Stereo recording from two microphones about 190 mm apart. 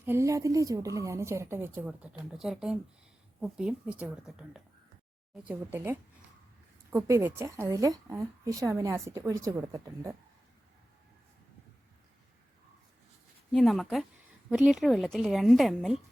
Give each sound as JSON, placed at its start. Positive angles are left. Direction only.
{"t": 0.0, "sound": "a woman's voice", "side_deg": -15}
{"t": 13.5, "sound": "a woman's voice", "side_deg": 0}